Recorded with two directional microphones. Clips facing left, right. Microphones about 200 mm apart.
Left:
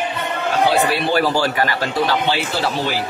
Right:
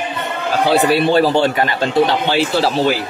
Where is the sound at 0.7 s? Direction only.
25° right (ahead or behind).